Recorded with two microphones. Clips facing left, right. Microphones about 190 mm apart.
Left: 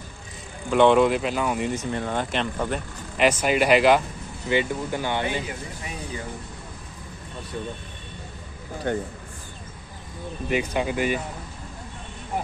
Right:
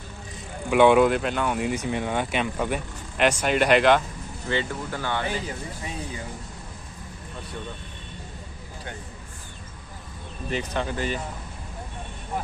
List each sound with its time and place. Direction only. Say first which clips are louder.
0.7 s speech: even; 5° right (ahead or behind)
1.7 s speech: right 1 dB; 15° right (ahead or behind); by 4.0 s 5° left (ahead or behind)
4.5 s speech: left 4 dB; 15° left (ahead or behind)
10.5 s speech: left 4 dB; 10° left (ahead or behind)